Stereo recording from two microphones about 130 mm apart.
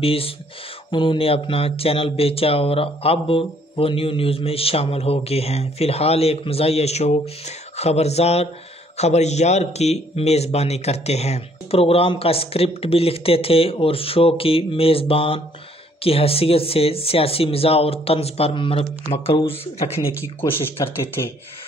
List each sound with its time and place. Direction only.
0.0 s speech: 45° left (ahead or behind)
20.8 s speech: 25° left (ahead or behind)